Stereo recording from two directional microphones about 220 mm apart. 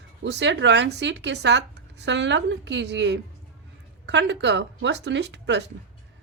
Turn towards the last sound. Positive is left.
turn(degrees=-50)  # may be behind; listen again after turning